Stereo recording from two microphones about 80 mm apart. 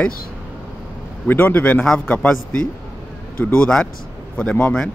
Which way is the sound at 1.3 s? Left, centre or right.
Left.